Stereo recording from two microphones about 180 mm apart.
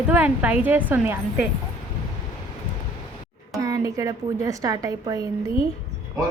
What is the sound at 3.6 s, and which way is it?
A woman's voice, 15° right (ahead or behind).